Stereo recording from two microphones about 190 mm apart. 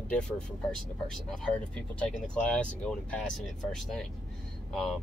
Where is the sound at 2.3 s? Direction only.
5° left (ahead or behind).